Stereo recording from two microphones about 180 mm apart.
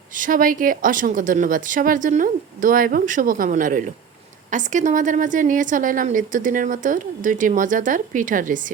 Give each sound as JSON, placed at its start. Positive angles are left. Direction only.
{"t": 0.1, "sound": "a woman's voice", "side_deg": -50}